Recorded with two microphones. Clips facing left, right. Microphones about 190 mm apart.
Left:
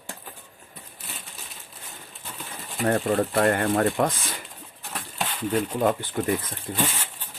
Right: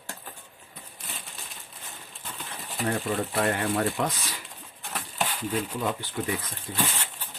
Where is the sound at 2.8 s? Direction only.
50° left (ahead or behind).